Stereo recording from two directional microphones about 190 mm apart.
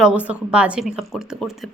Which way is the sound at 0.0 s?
5° right (ahead or behind).